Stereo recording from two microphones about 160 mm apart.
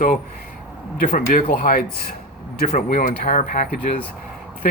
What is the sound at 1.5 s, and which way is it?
Speech, 65° left (ahead or behind).